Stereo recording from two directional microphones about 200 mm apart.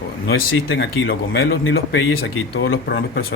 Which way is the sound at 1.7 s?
75° left (ahead or behind).